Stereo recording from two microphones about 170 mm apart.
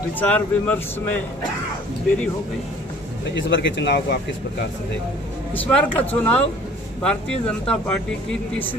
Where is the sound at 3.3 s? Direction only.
90° left.